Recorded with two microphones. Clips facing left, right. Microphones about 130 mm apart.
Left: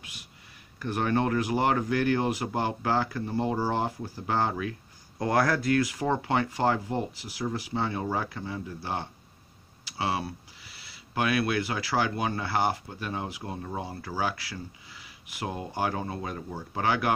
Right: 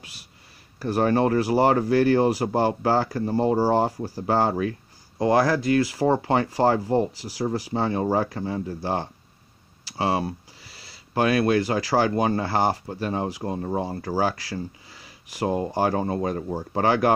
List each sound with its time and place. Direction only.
0.7 s speech: 35° right (ahead or behind)